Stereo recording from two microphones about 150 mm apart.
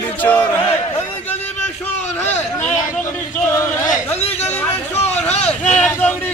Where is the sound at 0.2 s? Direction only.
15° left (ahead or behind).